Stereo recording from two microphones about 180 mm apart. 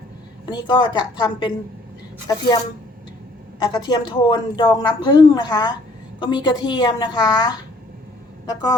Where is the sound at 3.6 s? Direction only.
25° left (ahead or behind).